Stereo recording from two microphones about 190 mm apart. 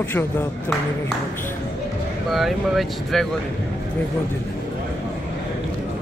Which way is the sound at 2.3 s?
Centre (ahead or behind).